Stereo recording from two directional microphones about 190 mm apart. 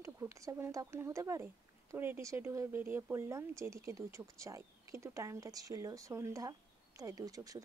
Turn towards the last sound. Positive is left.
turn(degrees=-20)  # may be behind; listen again after turning